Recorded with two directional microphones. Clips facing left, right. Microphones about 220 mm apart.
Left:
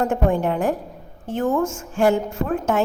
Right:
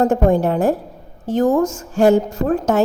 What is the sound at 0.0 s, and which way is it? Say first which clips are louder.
A woman's voice: right 5 dB; 40° right (ahead or behind).